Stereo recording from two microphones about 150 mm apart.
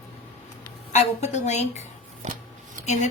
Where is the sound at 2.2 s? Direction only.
55° right (ahead or behind).